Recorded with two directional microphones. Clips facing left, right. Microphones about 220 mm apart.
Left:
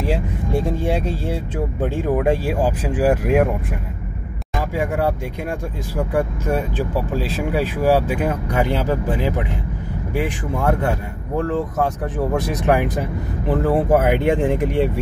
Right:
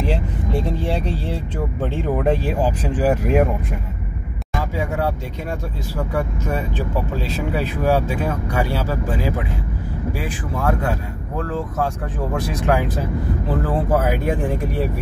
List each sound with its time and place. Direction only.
0.8 s speech: 5° left (ahead or behind)
5.9 s speech: 10° left (ahead or behind)
11.3 s speech: 20° left (ahead or behind)